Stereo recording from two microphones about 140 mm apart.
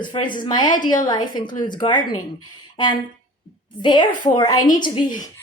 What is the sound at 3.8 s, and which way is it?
Speech, 35° left (ahead or behind).